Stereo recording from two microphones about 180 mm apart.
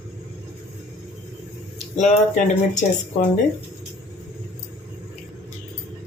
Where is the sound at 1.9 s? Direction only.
40° left (ahead or behind).